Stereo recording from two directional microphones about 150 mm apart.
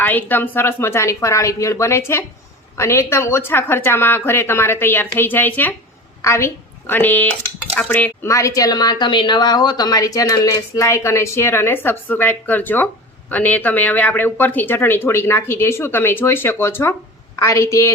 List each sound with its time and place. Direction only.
0.0 s a woman's voice: 10° left (ahead or behind)